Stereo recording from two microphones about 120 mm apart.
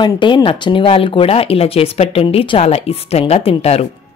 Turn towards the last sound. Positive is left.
turn(degrees=55)  # may be behind; listen again after turning